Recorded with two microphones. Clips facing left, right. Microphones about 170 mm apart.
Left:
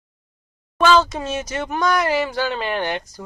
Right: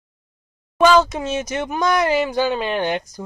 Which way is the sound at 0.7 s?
10° right (ahead or behind).